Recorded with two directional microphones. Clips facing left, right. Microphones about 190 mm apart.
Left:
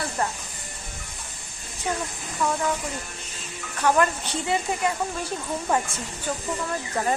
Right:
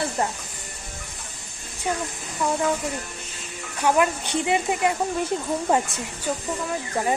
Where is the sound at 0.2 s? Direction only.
25° right (ahead or behind).